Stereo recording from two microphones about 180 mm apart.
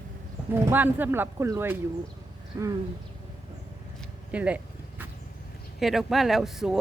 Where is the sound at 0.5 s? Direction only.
10° right (ahead or behind).